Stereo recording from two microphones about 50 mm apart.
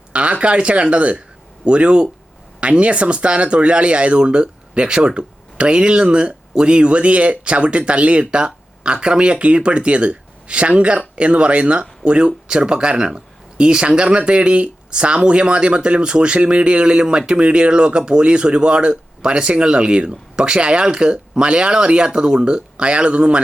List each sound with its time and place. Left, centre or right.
0.1 s speech: right